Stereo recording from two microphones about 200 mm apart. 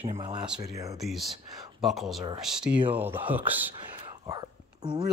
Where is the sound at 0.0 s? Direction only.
25° right (ahead or behind).